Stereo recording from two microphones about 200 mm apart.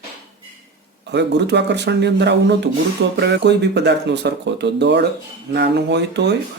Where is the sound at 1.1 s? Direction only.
60° right (ahead or behind).